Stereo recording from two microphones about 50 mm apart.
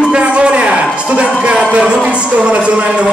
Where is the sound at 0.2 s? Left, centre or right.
Right.